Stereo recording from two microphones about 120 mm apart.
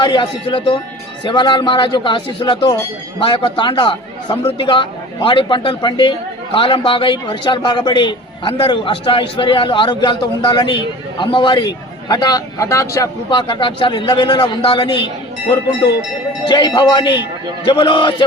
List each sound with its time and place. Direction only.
0.0 s a man's voice: 40° left (ahead or behind); by 13.1 s 25° left (ahead or behind)
13.3 s a man's voice: 40° left (ahead or behind)
16.5 s a man's voice: 40° left (ahead or behind)